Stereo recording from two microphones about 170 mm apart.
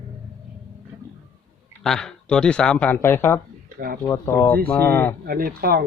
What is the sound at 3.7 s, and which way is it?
Speech, 65° right (ahead or behind).